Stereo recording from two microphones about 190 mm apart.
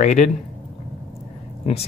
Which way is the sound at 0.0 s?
40° left (ahead or behind).